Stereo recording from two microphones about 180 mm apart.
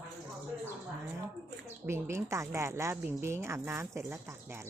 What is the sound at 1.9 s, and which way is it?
A woman's voice, 15° right (ahead or behind).